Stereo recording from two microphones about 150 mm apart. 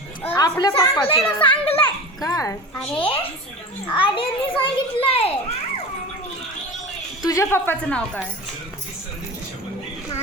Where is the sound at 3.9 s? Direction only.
35° left (ahead or behind).